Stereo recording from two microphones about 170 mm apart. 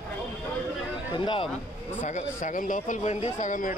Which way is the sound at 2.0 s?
45° left (ahead or behind).